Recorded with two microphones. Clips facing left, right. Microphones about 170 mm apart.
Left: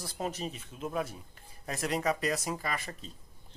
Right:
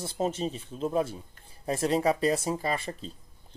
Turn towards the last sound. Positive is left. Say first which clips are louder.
# right 6 dB
turn(degrees=-30)  # may be behind; listen again after turning